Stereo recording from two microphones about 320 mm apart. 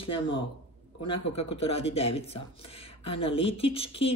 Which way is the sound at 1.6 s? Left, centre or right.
Centre.